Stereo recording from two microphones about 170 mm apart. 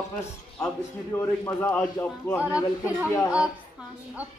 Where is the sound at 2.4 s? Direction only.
10° right (ahead or behind).